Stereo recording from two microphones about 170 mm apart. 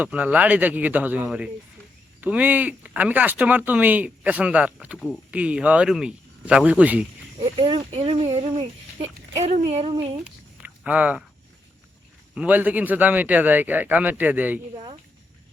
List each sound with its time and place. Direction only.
0.0 s speech: 10° right (ahead or behind)
7.4 s speech: 30° right (ahead or behind)
10.2 s a sound: 10° right (ahead or behind)
12.3 s speech: 10° right (ahead or behind)